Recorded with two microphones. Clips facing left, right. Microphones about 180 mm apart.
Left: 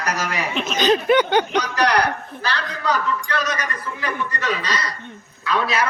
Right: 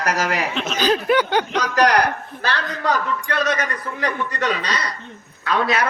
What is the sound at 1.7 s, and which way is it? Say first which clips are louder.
A man's voice: right 4 dB; 45° right (ahead or behind).